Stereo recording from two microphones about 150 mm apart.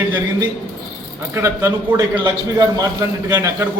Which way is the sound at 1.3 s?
20° right (ahead or behind).